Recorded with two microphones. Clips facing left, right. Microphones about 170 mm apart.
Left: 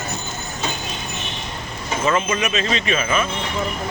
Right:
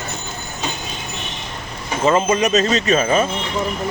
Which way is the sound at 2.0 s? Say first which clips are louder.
Right 5 dB; 35° right (ahead or behind).